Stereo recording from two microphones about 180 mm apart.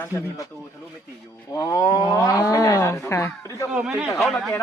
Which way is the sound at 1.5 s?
20° left (ahead or behind).